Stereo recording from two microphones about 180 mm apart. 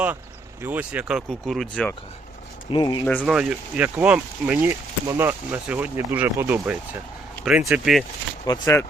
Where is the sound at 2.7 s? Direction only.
25° left (ahead or behind).